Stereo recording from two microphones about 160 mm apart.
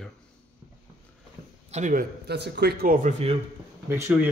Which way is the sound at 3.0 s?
45° right (ahead or behind).